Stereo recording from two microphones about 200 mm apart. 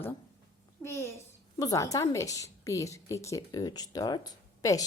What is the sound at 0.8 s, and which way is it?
A child's voice, 10° left (ahead or behind).